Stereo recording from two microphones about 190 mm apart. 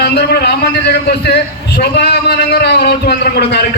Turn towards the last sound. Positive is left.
turn(degrees=60)  # may be behind; listen again after turning